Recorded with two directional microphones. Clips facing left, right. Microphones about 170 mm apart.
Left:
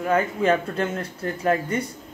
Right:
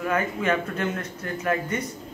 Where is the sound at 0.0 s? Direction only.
30° left (ahead or behind).